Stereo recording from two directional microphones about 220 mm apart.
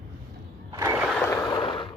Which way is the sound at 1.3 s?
15° left (ahead or behind).